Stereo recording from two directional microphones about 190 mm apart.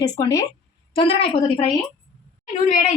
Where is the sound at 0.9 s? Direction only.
30° left (ahead or behind).